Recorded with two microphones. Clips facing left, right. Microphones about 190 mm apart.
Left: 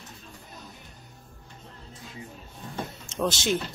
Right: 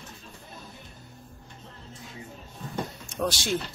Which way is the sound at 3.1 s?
90° left.